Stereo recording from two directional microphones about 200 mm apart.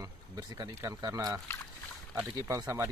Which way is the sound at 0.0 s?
20° right (ahead or behind).